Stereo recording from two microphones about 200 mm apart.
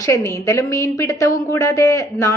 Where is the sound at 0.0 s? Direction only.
15° left (ahead or behind).